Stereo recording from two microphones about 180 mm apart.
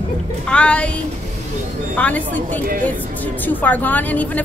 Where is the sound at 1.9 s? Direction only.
10° left (ahead or behind).